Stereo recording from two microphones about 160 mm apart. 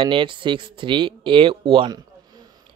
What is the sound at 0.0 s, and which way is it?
Speech, 30° right (ahead or behind).